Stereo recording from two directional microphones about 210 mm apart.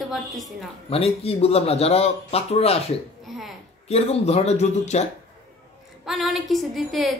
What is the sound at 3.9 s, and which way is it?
A man's voice, 30° left (ahead or behind).